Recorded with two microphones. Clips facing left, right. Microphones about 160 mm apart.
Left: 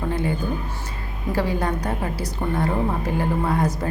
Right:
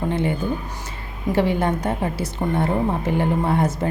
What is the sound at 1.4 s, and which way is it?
A woman's voice, 25° right (ahead or behind).